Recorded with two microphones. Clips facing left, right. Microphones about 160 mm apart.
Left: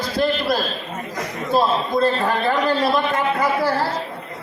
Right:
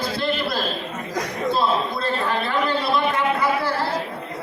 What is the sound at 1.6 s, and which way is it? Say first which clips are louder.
A man's voice: left 7 dB; 40° left (ahead or behind).